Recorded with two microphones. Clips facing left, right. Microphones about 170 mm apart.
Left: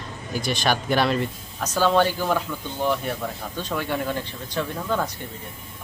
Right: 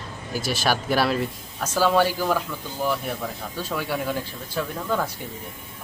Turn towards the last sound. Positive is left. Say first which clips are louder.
# even
turn(degrees=-5)  # may be behind; listen again after turning